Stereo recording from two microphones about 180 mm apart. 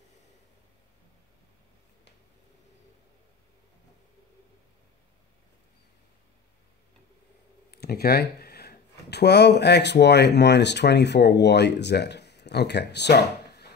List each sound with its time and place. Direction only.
7.7 s speech: 60° left (ahead or behind)